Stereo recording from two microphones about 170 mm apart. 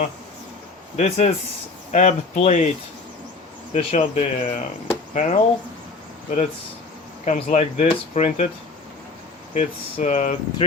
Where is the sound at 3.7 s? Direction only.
40° left (ahead or behind).